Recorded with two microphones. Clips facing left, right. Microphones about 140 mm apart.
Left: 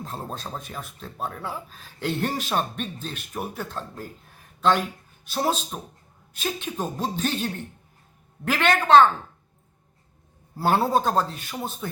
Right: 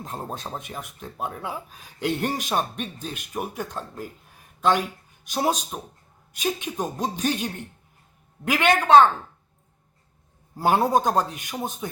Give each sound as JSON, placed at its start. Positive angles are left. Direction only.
{"t": 0.0, "sound": "speech", "side_deg": -15}
{"t": 10.5, "sound": "speech", "side_deg": -15}